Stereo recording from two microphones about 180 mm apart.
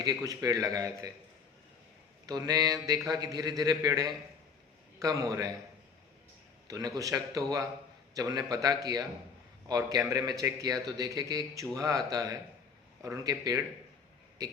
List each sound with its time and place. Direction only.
0.0 s a man's voice: 20° right (ahead or behind)
2.2 s a man's voice: 20° right (ahead or behind)
6.7 s a man's voice: 20° right (ahead or behind)